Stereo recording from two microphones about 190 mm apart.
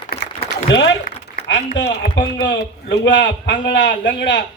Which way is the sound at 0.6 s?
70° left (ahead or behind).